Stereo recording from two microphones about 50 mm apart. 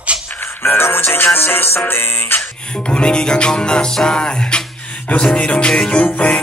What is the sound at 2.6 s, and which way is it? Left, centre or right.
Music, centre.